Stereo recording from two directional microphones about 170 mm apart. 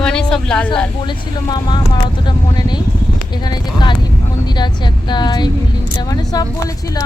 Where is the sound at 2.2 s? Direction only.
25° left (ahead or behind).